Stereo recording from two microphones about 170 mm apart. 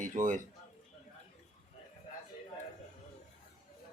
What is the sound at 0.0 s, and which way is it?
Speech, 50° right (ahead or behind).